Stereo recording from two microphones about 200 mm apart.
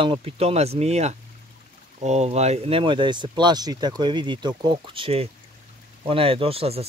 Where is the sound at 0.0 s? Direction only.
30° right (ahead or behind).